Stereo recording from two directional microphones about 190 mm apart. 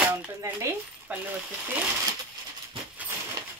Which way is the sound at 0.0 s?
10° right (ahead or behind).